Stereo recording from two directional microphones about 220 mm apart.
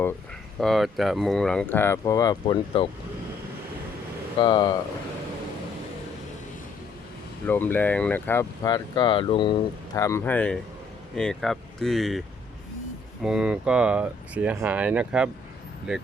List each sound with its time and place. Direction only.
0.6 s speech: centre (ahead or behind); by 2.9 s 20° left (ahead or behind)
4.4 s speech: 20° left (ahead or behind)
7.4 s speech: 10° left (ahead or behind)
13.2 s speech: 5° right (ahead or behind)